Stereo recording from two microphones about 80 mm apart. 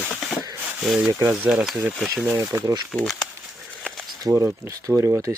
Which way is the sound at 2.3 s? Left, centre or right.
Right.